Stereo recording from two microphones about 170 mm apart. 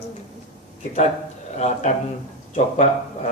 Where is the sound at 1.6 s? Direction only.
40° left (ahead or behind).